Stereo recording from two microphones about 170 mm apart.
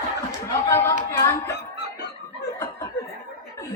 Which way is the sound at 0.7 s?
15° left (ahead or behind).